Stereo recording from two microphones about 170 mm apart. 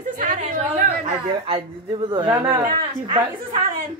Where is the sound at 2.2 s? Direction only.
15° right (ahead or behind).